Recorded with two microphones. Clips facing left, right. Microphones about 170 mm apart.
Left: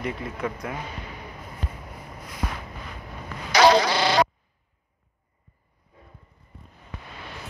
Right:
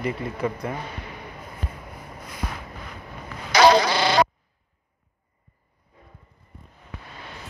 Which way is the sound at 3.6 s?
50° right (ahead or behind).